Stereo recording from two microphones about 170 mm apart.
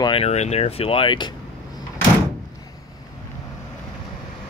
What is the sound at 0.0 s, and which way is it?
Speech, 35° left (ahead or behind).